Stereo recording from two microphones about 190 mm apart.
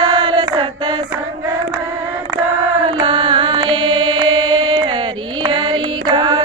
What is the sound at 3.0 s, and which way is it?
Mantra, 25° right (ahead or behind).